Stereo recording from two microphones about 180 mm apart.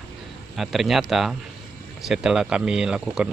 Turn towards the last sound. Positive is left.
turn(degrees=-5)  # may be behind; listen again after turning